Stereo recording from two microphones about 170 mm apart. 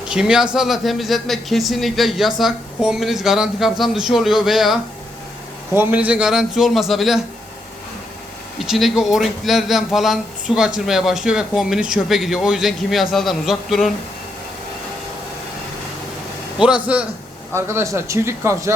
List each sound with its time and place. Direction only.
0.1 s a man's voice: 5° right (ahead or behind)
5.7 s a man's voice: 10° right (ahead or behind)
8.5 s a man's voice: centre (ahead or behind)
16.6 s speech: 5° right (ahead or behind)